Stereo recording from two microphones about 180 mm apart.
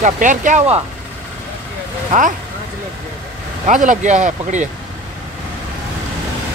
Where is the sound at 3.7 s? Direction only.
45° right (ahead or behind).